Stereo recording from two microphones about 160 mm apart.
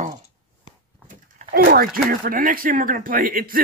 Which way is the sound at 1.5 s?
70° right (ahead or behind).